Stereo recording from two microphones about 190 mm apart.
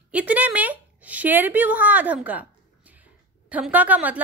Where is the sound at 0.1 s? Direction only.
10° right (ahead or behind).